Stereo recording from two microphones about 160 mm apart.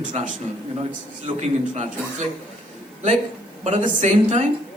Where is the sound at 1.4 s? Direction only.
45° right (ahead or behind).